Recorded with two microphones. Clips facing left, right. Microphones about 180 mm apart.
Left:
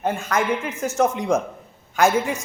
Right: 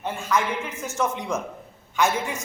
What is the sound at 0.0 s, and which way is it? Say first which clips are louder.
Speech: left 3 dB; 65° left (ahead or behind).